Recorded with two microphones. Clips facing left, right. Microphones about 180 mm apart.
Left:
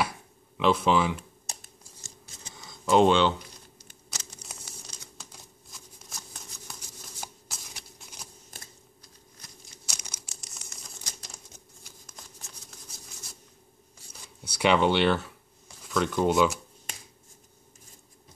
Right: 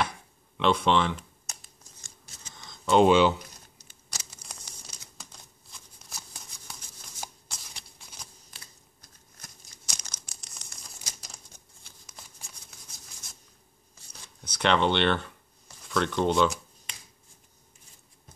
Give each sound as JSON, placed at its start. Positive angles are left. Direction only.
{"t": 0.6, "sound": "speech", "side_deg": 5}
{"t": 1.5, "sound": "scissors", "side_deg": 35}
{"t": 2.5, "sound": "a sound", "side_deg": 5}
{"t": 3.1, "sound": "speech", "side_deg": -10}
{"t": 4.2, "sound": "crumpling", "side_deg": 0}
{"t": 8.5, "sound": "scissors", "side_deg": 45}
{"t": 9.8, "sound": "crumpling", "side_deg": 5}
{"t": 12.1, "sound": "shuffling cards", "side_deg": 0}
{"t": 14.1, "sound": "shuffling cards", "side_deg": 5}